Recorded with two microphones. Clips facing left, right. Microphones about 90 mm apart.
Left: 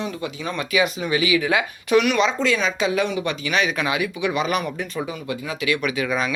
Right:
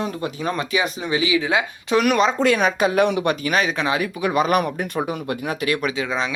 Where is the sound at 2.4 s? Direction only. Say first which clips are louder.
Right 3 dB; 55° right (ahead or behind).